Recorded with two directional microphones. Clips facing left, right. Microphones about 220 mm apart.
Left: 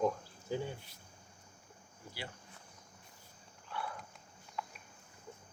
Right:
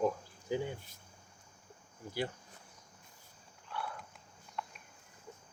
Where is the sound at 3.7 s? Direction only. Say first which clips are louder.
Even; centre (ahead or behind).